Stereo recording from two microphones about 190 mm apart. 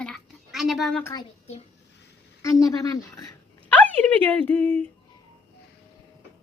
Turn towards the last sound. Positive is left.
turn(degrees=10)  # may be behind; listen again after turning